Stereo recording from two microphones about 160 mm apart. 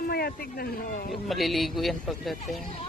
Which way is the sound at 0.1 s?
75° left (ahead or behind).